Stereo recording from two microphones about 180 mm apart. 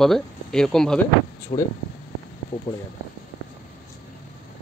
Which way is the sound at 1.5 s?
35° left (ahead or behind).